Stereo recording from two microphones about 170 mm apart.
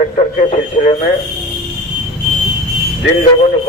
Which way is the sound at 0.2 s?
40° left (ahead or behind).